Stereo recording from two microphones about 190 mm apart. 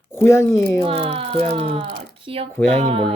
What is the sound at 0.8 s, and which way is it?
Speech, 30° right (ahead or behind).